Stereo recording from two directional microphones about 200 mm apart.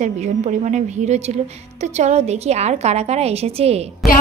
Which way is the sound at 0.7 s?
35° right (ahead or behind).